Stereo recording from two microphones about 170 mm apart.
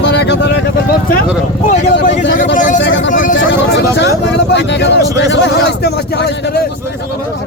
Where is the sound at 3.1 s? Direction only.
50° left (ahead or behind).